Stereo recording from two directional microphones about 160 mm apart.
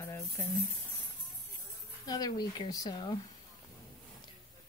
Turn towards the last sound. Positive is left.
turn(degrees=25)  # may be behind; listen again after turning